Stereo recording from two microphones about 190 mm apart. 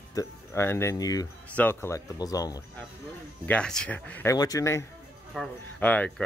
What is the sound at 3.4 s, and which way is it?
Speech, 5° left (ahead or behind).